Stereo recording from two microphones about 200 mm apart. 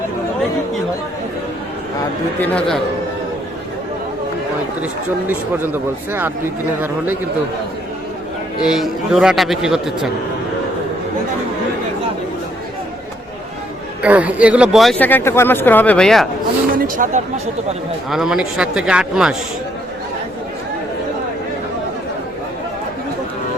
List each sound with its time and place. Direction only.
2.4 s speech: 5° left (ahead or behind)
5.3 s speech: 10° right (ahead or behind)
8.6 s speech: centre (ahead or behind)
14.0 s speech: 5° right (ahead or behind)
16.7 s speech: 40° right (ahead or behind)
18.1 s speech: 5° right (ahead or behind)